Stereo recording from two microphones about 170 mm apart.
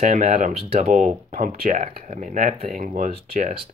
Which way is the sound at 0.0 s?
50° right (ahead or behind).